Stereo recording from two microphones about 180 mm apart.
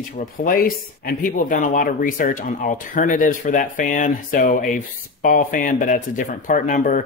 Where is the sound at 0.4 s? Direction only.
55° left (ahead or behind).